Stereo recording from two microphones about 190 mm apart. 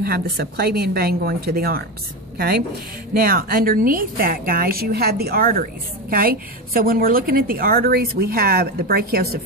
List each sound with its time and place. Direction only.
0.0 s a woman's voice: 55° right (ahead or behind)